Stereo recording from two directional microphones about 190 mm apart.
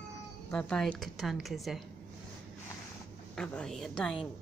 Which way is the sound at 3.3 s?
5° left (ahead or behind).